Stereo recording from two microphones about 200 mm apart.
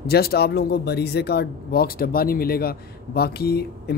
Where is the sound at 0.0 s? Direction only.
50° left (ahead or behind).